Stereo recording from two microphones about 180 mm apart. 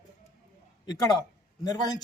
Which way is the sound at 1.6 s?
20° left (ahead or behind).